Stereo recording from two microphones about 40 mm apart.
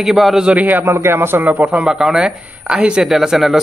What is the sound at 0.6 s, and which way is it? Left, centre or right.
Speech, right.